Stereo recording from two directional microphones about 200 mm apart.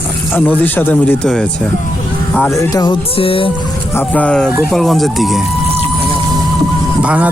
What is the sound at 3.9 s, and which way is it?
Speech, 5° left (ahead or behind).